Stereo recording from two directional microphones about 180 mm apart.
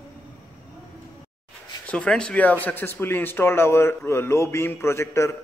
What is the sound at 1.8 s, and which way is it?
Speech, 5° left (ahead or behind).